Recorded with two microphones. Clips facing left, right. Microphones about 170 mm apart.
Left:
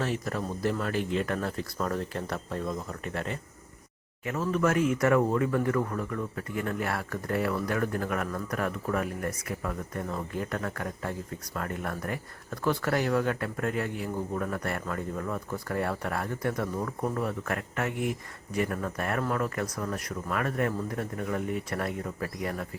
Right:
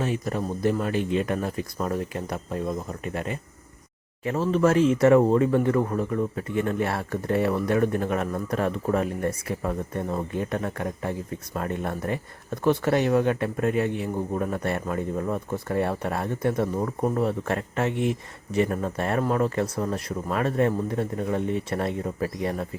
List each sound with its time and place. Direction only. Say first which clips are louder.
0.0 s speech: right 4 dB; 20° right (ahead or behind)
4.2 s speech: right 5 dB; 30° right (ahead or behind)